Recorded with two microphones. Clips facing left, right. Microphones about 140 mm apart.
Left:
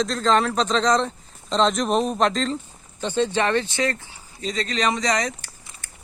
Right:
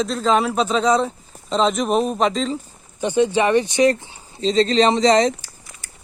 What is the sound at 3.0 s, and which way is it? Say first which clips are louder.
Speech: right 5 dB; 15° right (ahead or behind).